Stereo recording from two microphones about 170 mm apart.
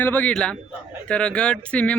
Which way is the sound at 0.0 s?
10° left (ahead or behind).